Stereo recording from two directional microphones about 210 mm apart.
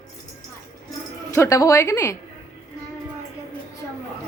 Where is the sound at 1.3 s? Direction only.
15° left (ahead or behind).